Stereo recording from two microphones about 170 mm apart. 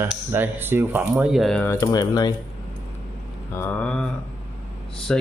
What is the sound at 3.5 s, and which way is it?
Speech, 10° left (ahead or behind).